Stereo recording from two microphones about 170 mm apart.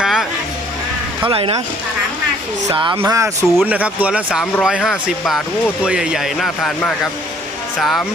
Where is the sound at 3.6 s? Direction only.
10° right (ahead or behind).